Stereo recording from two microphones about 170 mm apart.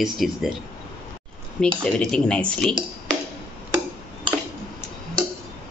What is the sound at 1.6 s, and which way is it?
Speech, 5° left (ahead or behind).